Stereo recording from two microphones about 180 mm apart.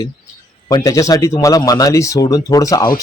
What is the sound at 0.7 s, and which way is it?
Speech, 20° left (ahead or behind).